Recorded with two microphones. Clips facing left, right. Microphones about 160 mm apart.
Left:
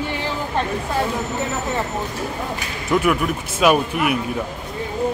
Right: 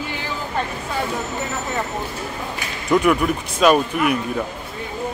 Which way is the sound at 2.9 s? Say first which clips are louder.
Right 2 dB; centre (ahead or behind).